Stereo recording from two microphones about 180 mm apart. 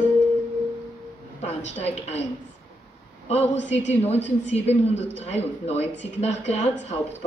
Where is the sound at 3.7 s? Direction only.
35° left (ahead or behind).